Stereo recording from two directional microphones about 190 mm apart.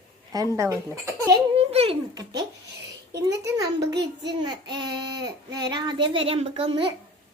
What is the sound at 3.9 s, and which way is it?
Speech, 65° right (ahead or behind).